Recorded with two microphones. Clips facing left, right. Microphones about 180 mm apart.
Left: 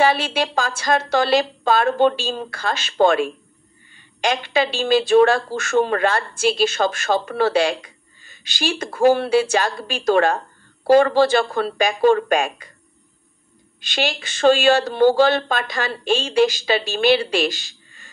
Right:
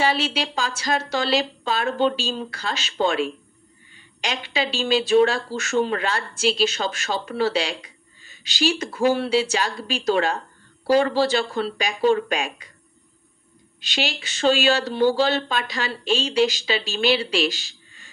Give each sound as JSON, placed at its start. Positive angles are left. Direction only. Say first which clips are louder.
{"t": 0.0, "sound": "speech", "louder": "left 4 dB", "side_deg": 50}
{"t": 13.7, "sound": "speech", "louder": "left 4 dB", "side_deg": 50}